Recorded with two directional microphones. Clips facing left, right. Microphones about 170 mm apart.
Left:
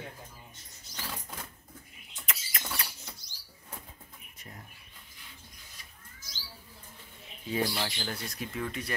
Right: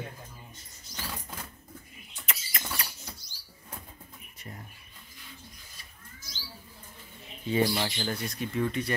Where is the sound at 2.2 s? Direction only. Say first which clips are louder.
Right 1 dB; centre (ahead or behind).